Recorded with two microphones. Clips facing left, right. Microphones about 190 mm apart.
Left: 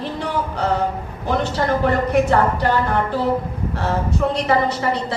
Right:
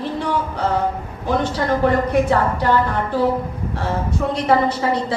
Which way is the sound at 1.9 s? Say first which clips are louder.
Even; 65° left (ahead or behind).